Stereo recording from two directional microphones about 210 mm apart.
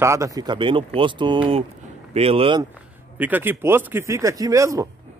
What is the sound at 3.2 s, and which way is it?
Speech, 10° right (ahead or behind).